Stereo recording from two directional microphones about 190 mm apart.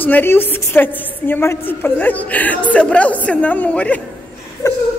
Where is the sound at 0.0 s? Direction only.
10° left (ahead or behind).